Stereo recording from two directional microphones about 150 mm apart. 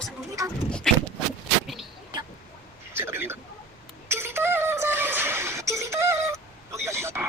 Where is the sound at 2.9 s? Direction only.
15° right (ahead or behind).